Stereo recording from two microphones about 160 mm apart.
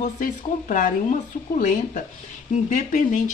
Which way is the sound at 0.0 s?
55° left (ahead or behind).